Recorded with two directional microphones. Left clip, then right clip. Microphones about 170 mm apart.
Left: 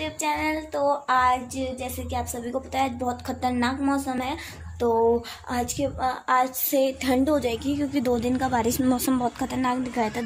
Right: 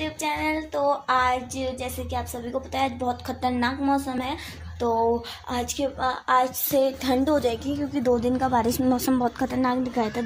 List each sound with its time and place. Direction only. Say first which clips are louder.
0.0 s child singing: left 1 dB; 10° left (ahead or behind)
7.0 s a woman's voice: even; centre (ahead or behind)
7.3 s child singing: right 1 dB; 10° left (ahead or behind)
7.8 s child singing: right 3 dB; 20° left (ahead or behind)